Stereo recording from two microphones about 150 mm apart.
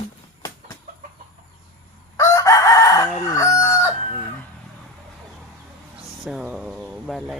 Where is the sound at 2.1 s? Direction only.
20° left (ahead or behind).